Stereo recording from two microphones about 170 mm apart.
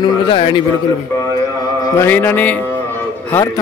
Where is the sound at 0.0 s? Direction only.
30° left (ahead or behind).